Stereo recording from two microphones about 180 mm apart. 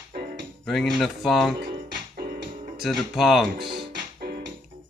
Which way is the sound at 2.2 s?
60° right (ahead or behind).